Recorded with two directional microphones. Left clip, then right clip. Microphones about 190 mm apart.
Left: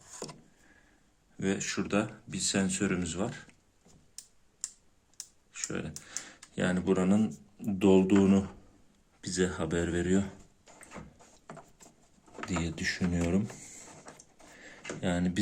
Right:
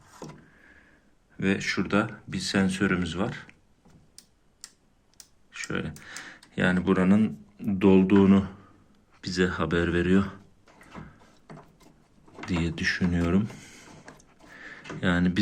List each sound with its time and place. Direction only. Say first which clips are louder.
1.4 s speech: right 6 dB; 15° left (ahead or behind)
5.5 s computer keyboard: right 5 dB; 15° left (ahead or behind)
6.0 s speech: right 3 dB; 15° left (ahead or behind)
12.5 s speech: right 6 dB; 15° left (ahead or behind)
14.5 s a sound: right 3 dB; 15° left (ahead or behind)